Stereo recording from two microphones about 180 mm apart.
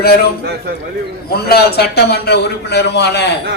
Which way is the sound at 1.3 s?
60° left (ahead or behind).